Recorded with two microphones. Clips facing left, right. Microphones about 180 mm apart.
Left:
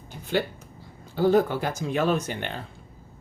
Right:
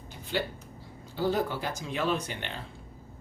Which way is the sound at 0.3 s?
50° left (ahead or behind).